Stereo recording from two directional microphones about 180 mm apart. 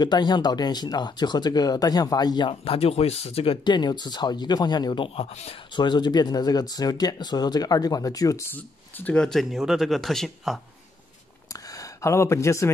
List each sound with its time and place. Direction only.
0.0 s speech: 25° left (ahead or behind); by 10.6 s centre (ahead or behind)
11.7 s speech: 15° left (ahead or behind)